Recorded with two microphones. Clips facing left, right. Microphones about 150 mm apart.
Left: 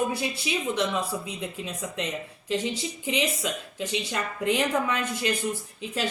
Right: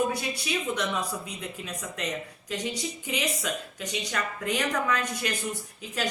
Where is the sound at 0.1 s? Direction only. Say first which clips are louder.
Left 1 dB; 25° left (ahead or behind).